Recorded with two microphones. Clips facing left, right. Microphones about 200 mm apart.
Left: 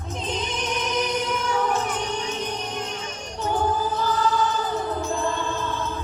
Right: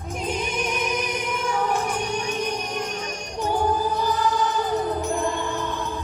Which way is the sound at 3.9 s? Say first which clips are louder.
Even; 15° right (ahead or behind).